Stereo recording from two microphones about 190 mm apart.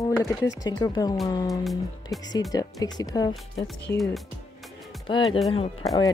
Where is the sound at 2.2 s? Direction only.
20° left (ahead or behind).